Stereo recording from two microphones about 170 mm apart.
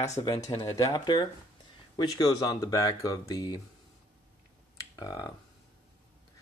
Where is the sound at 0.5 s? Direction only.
20° left (ahead or behind).